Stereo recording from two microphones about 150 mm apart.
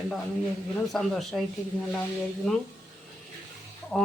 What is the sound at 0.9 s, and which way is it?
Speech, 5° left (ahead or behind).